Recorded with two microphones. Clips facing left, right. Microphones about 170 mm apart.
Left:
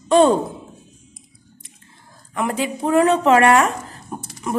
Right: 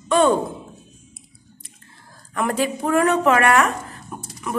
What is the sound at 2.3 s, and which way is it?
Speech, 20° left (ahead or behind).